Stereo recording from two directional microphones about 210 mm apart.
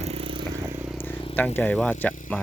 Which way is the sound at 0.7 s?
10° right (ahead or behind).